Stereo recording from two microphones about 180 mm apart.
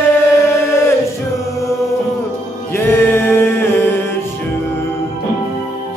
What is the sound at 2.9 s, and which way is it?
Music, 15° left (ahead or behind).